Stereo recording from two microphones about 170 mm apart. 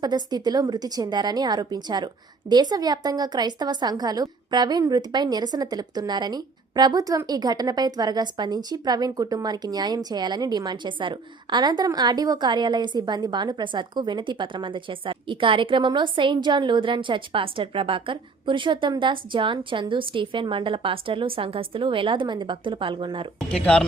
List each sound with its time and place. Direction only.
0.0 s a woman's voice: 25° right (ahead or behind)
23.5 s speech: 5° left (ahead or behind)